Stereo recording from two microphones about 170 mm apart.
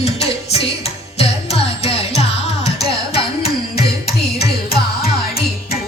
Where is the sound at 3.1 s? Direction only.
35° left (ahead or behind).